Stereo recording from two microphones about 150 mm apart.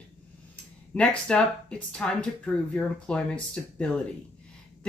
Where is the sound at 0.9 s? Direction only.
5° left (ahead or behind).